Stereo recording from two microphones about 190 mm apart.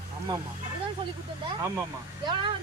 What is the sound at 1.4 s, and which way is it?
A child's voice, 15° right (ahead or behind).